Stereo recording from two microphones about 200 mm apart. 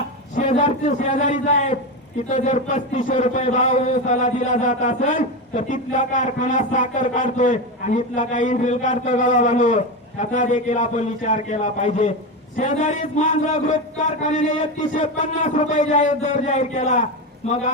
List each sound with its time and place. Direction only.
0.3 s a man's voice: 40° left (ahead or behind)